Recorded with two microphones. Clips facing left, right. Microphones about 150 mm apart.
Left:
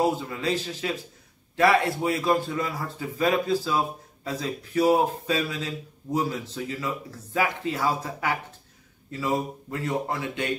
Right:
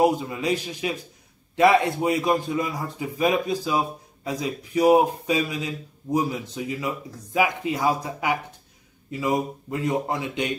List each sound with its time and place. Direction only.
0.0 s speech: 15° right (ahead or behind)